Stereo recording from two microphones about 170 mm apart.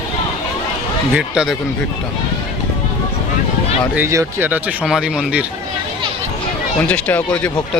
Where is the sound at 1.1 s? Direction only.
5° right (ahead or behind).